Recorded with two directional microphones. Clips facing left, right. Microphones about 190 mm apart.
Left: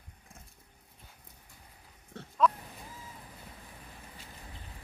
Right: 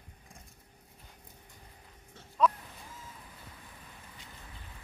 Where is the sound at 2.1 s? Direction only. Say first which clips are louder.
Left 10 dB; 60° left (ahead or behind).